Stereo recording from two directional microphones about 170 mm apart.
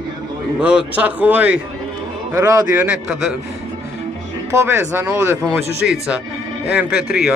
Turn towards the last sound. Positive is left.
turn(degrees=-5)  # may be behind; listen again after turning